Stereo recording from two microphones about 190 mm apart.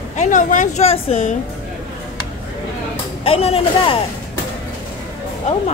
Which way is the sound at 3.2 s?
30° left (ahead or behind).